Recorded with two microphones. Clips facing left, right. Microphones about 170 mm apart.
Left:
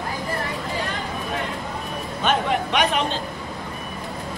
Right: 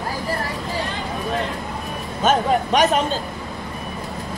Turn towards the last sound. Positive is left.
turn(degrees=-40)  # may be behind; listen again after turning